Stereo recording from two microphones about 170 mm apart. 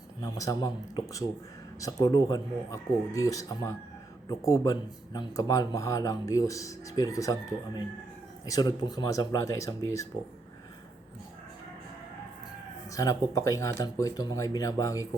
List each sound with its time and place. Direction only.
0.2 s speech: 20° left (ahead or behind)
8.4 s speech: 20° left (ahead or behind)
12.9 s speech: 20° left (ahead or behind)